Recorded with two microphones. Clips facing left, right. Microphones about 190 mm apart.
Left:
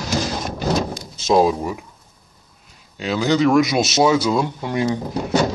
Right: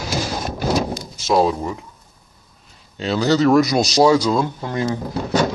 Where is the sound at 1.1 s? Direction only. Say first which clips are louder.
Left 2 dB; 15° left (ahead or behind).